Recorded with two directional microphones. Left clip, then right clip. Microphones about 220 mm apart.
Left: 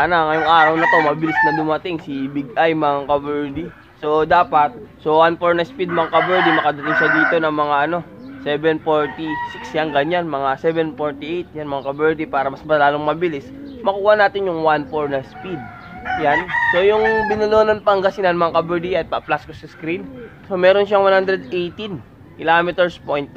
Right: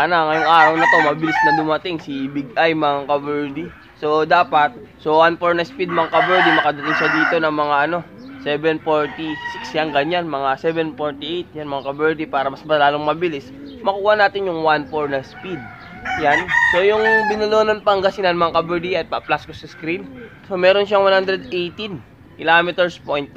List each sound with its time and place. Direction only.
0.0 s chicken: 5° right (ahead or behind)
16.7 s chicken: 5° right (ahead or behind)